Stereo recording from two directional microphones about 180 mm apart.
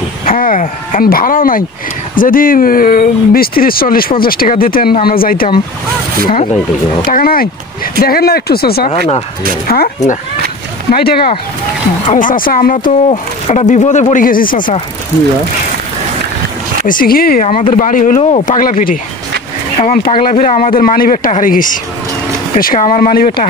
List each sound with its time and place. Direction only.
0.2 s speech: 50° left (ahead or behind)
7.1 s speech: 55° left (ahead or behind)
10.9 s speech: 60° left (ahead or behind)
12.1 s speech: 45° left (ahead or behind)
16.8 s speech: 50° left (ahead or behind)
17.5 s speech: 45° left (ahead or behind)
20.3 s speech: 40° left (ahead or behind)